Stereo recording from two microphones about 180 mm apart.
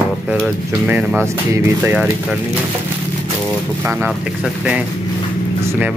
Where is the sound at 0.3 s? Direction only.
5° right (ahead or behind).